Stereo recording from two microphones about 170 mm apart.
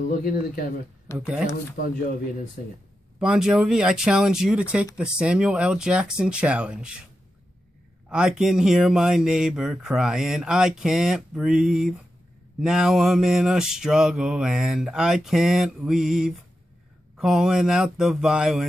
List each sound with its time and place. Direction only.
1.1 s speech: 5° right (ahead or behind)
3.2 s speech: 5° right (ahead or behind)
8.1 s speech: 5° right (ahead or behind)